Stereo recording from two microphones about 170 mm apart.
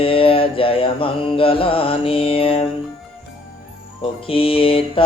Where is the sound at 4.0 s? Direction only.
35° left (ahead or behind).